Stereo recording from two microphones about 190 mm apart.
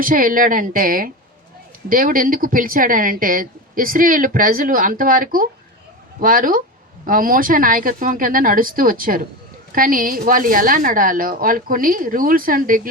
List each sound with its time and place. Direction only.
0.0 s speech: 45° right (ahead or behind)